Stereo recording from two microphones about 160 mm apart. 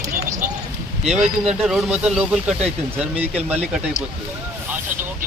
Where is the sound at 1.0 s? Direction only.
45° right (ahead or behind).